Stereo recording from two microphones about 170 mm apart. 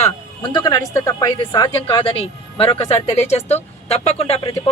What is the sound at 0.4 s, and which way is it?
Speech, 25° left (ahead or behind).